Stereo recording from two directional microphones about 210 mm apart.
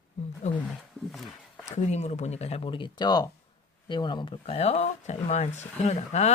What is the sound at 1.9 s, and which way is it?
Speech, 30° left (ahead or behind).